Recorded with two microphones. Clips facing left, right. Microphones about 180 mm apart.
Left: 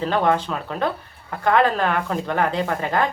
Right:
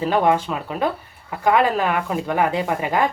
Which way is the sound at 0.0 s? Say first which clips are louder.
Right 2 dB; 10° right (ahead or behind).